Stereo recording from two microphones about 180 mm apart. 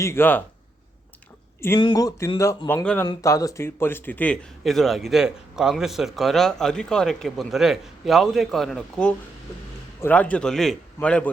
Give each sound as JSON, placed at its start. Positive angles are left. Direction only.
{"t": 0.0, "sound": "a man's voice", "side_deg": 15}
{"t": 1.8, "sound": "a man's voice", "side_deg": 20}